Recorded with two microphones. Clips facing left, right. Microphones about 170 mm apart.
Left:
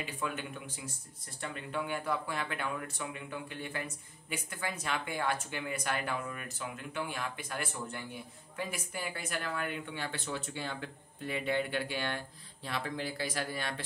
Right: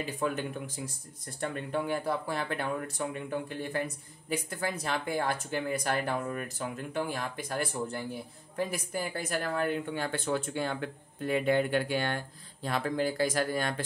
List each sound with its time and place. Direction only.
0.0 s speech: 40° right (ahead or behind)